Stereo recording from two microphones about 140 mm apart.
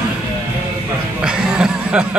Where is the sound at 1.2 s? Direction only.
5° right (ahead or behind).